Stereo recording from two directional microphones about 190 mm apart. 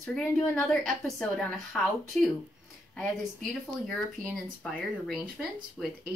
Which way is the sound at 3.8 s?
Centre (ahead or behind).